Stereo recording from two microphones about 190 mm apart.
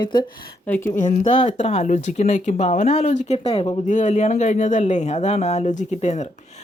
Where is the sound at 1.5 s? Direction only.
35° left (ahead or behind).